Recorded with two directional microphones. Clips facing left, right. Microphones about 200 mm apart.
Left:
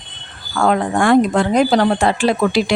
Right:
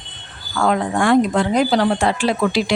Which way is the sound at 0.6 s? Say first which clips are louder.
Left 2 dB; 50° left (ahead or behind).